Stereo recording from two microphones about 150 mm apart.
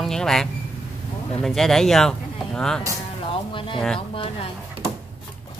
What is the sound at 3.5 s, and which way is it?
Speech, 35° left (ahead or behind).